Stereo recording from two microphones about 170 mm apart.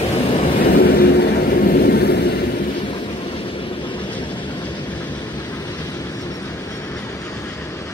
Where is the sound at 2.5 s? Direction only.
50° left (ahead or behind).